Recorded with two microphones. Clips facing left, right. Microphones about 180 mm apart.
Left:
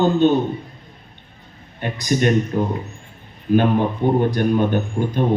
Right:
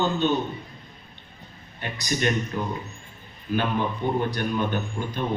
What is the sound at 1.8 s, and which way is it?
A man's voice, 45° left (ahead or behind).